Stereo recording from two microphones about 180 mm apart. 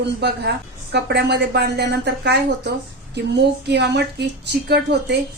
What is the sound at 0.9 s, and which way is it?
A woman's voice, 65° right (ahead or behind).